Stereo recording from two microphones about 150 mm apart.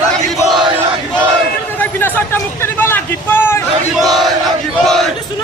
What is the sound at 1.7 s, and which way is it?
A man's voice, 15° left (ahead or behind).